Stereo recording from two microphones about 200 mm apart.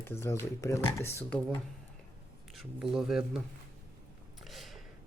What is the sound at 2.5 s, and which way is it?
Speech, centre (ahead or behind).